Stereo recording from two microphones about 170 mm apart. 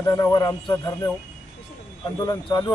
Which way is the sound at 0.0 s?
20° left (ahead or behind).